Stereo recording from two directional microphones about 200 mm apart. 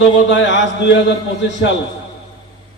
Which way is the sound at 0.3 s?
65° left (ahead or behind).